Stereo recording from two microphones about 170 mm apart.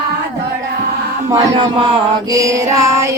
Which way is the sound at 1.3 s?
25° right (ahead or behind).